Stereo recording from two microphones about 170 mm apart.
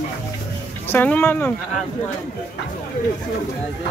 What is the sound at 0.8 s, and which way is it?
Speech, 10° left (ahead or behind).